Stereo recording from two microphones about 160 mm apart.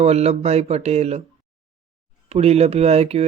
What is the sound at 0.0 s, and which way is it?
Speech, 40° right (ahead or behind).